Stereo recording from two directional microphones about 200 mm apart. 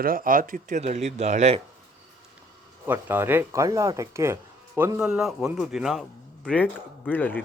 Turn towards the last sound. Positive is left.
turn(degrees=10)  # may be behind; listen again after turning